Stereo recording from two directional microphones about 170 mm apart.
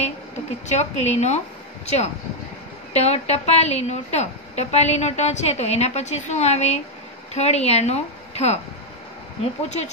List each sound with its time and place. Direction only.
0.7 s a woman's voice: 40° left (ahead or behind)
2.9 s a woman's voice: 40° left (ahead or behind)